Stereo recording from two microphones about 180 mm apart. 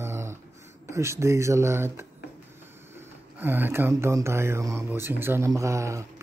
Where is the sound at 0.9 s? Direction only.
15° right (ahead or behind).